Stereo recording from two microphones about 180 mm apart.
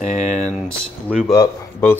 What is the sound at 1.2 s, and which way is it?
Speech, 15° left (ahead or behind).